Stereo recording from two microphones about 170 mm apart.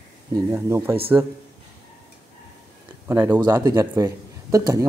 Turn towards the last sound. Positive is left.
turn(degrees=-20)  # may be behind; listen again after turning